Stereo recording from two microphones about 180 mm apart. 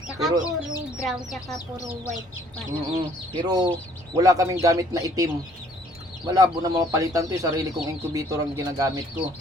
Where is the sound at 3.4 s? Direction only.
20° right (ahead or behind).